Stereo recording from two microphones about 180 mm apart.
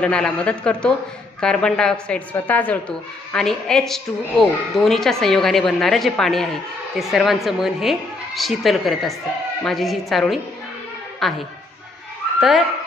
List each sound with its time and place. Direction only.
0.0 s a woman's voice: 5° left (ahead or behind)